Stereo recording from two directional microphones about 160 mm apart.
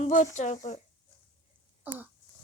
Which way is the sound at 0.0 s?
50° left (ahead or behind).